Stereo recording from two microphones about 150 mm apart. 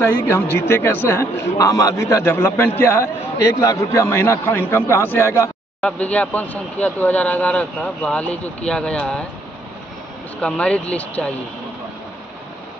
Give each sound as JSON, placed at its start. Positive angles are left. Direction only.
{"t": 0.0, "sound": "a man's voice", "side_deg": 15}
{"t": 10.4, "sound": "a man's voice", "side_deg": 10}